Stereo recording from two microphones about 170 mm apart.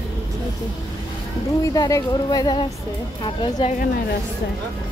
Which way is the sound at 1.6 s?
20° left (ahead or behind).